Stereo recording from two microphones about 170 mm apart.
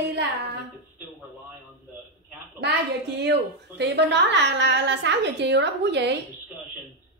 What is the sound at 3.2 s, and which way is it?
A woman's voice, 85° right.